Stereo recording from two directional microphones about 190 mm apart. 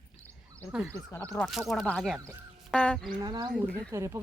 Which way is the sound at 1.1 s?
5° left (ahead or behind).